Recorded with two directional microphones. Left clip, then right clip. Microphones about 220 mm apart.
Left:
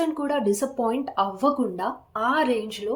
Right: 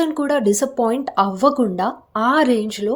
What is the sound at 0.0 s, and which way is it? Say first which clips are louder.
Speech: right 6 dB; 40° right (ahead or behind).